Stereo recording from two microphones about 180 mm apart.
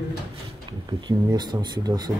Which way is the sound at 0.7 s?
25° right (ahead or behind).